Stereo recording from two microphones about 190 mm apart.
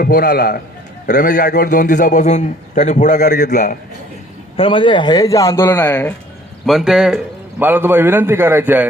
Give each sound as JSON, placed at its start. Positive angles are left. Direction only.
{"t": 0.0, "sound": "a man's voice", "side_deg": 55}
{"t": 4.5, "sound": "speech", "side_deg": 25}
{"t": 6.7, "sound": "a man's voice", "side_deg": 0}